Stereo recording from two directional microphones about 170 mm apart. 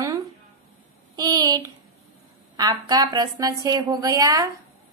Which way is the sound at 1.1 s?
25° right (ahead or behind).